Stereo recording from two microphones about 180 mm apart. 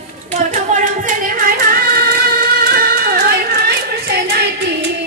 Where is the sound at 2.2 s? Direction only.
55° right (ahead or behind).